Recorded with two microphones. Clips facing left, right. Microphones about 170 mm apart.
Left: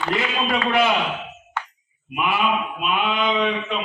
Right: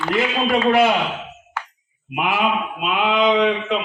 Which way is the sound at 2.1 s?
90° right.